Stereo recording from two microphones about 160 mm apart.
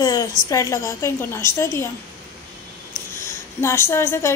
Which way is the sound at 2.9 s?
15° left (ahead or behind).